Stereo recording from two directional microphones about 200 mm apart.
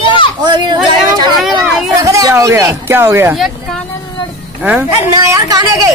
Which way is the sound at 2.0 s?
15° right (ahead or behind).